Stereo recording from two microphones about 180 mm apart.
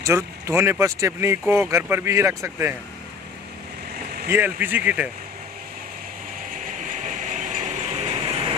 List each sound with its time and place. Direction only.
0.0 s speech: 15° right (ahead or behind)
4.3 s speech: 10° right (ahead or behind)
6.5 s train: 45° right (ahead or behind)